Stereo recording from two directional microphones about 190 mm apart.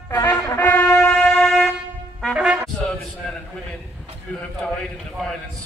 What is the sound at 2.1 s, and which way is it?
Brass instrument, centre (ahead or behind).